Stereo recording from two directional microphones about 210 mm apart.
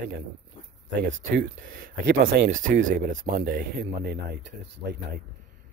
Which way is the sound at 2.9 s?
40° right (ahead or behind).